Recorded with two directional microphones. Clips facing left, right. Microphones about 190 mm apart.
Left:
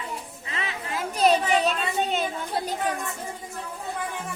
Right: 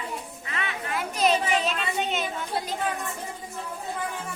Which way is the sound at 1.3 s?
35° left (ahead or behind).